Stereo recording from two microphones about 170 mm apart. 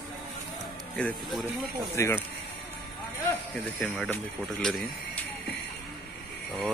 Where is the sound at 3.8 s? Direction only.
5° left (ahead or behind).